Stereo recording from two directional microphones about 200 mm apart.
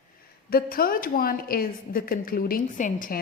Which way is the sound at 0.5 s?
45° left (ahead or behind).